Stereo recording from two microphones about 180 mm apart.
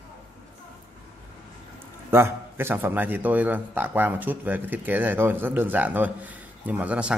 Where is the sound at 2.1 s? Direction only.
15° right (ahead or behind).